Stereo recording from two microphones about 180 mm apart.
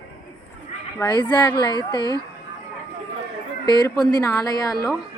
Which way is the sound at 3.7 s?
25° left (ahead or behind).